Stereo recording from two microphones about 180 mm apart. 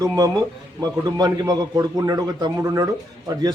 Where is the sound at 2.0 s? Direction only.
20° right (ahead or behind).